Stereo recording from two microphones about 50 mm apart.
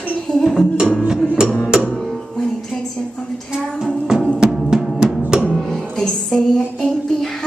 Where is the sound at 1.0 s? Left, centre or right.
Centre.